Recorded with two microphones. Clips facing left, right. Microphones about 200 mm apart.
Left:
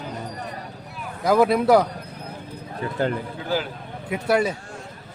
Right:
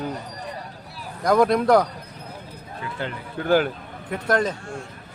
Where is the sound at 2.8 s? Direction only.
40° left (ahead or behind).